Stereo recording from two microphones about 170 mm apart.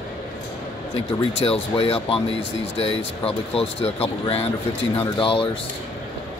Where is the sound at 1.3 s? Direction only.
35° left (ahead or behind).